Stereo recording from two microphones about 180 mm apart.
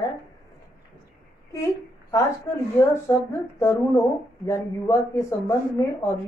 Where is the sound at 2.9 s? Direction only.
15° left (ahead or behind).